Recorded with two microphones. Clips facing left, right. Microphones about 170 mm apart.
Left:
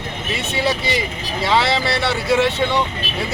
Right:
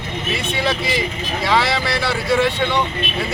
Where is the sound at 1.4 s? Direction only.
Centre (ahead or behind).